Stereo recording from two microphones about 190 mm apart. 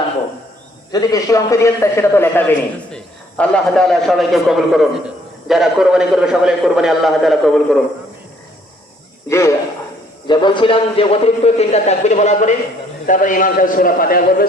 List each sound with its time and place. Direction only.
0.9 s a man's voice: 20° left (ahead or behind); by 7.8 s centre (ahead or behind)
9.3 s a man's voice: 15° left (ahead or behind); by 14.4 s 50° left (ahead or behind)